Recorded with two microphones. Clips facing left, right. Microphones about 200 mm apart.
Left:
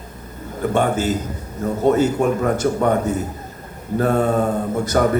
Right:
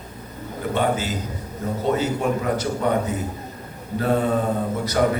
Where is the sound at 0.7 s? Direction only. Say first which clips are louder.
Left 4 dB; 50° left (ahead or behind).